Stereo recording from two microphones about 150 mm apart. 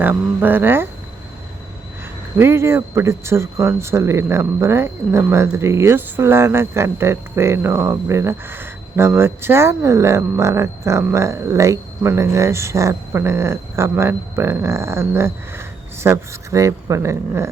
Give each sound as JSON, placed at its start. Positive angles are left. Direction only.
{"t": 0.0, "sound": "speech", "side_deg": -15}
{"t": 2.4, "sound": "speech", "side_deg": -15}